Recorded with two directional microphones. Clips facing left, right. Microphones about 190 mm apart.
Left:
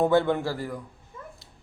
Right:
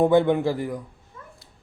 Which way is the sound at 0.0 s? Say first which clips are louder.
Right 4 dB; 20° right (ahead or behind).